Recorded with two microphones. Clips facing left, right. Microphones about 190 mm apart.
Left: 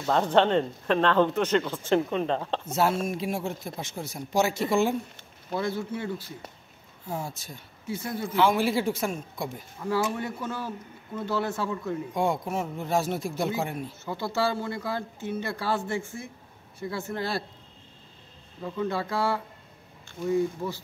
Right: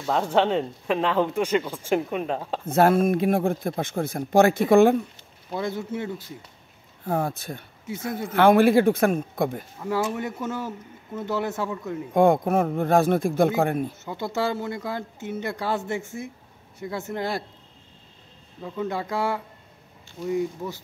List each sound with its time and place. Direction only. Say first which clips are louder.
0.0 s speech: even; 10° right (ahead or behind)
2.6 s speech: right 11 dB; 55° right (ahead or behind)
5.6 s speech: right 2 dB; 20° right (ahead or behind)
7.1 s speech: right 8 dB; 60° right (ahead or behind)
9.8 s speech: right 1 dB; 20° right (ahead or behind)
12.1 s speech: right 11 dB; 55° right (ahead or behind)
14.0 s speech: left 3 dB; 20° right (ahead or behind)
18.9 s speech: right 1 dB; 15° right (ahead or behind)